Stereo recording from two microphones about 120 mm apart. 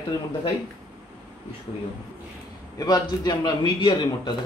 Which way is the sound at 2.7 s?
30° left (ahead or behind).